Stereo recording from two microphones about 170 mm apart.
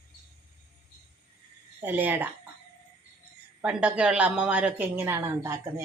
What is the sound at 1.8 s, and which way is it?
Speech, 10° right (ahead or behind).